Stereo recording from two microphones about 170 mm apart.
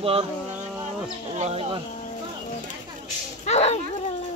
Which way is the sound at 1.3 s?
35° right (ahead or behind).